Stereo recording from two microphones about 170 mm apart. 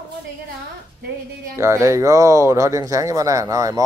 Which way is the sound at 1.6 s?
15° right (ahead or behind).